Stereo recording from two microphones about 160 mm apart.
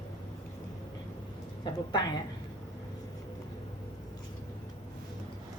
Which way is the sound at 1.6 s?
25° left (ahead or behind).